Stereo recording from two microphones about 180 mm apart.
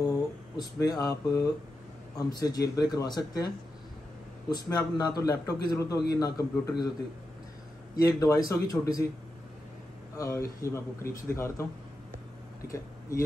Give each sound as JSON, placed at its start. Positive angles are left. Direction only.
{"t": 0.6, "sound": "a man's voice", "side_deg": 20}
{"t": 7.9, "sound": "a man's voice", "side_deg": 20}
{"t": 10.1, "sound": "speech", "side_deg": 15}
{"t": 12.6, "sound": "speech", "side_deg": 15}